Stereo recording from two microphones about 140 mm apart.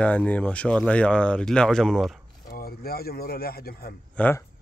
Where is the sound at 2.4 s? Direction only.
90° left.